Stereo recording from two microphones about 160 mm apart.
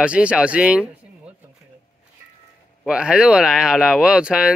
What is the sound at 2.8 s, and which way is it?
Speech, 5° right (ahead or behind).